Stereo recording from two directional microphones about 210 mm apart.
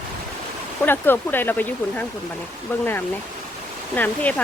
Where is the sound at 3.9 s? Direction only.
10° left (ahead or behind).